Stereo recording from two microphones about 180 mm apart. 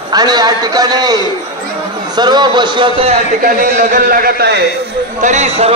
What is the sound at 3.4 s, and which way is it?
A man's voice, 50° right (ahead or behind).